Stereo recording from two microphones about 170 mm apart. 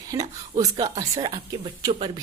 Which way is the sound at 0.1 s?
20° right (ahead or behind).